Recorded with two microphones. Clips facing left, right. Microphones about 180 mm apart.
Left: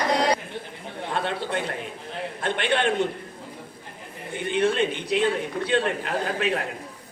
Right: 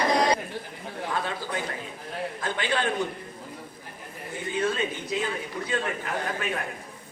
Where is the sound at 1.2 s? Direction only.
65° left (ahead or behind).